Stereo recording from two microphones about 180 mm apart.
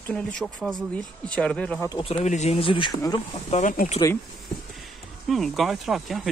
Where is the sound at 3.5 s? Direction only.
45° left (ahead or behind).